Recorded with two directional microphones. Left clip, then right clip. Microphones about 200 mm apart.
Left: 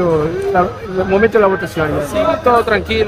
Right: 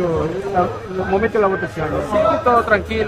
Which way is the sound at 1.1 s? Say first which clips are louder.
Left 5 dB; 35° left (ahead or behind).